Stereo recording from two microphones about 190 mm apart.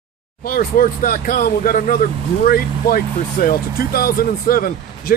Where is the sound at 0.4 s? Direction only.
50° left (ahead or behind).